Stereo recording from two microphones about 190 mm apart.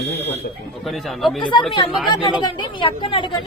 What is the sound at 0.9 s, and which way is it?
Speech, centre (ahead or behind).